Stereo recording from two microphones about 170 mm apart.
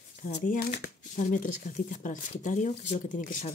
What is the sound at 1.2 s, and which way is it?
Speech, 50° left (ahead or behind).